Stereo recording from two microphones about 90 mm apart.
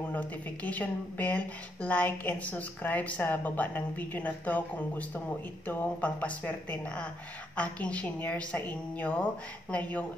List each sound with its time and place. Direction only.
0.1 s a woman's voice: 15° left (ahead or behind)